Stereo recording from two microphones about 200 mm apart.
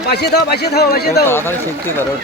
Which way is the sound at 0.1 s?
55° left (ahead or behind).